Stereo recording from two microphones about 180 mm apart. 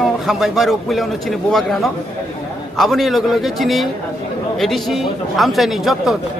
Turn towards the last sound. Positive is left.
turn(degrees=0)  # may be behind; listen again after turning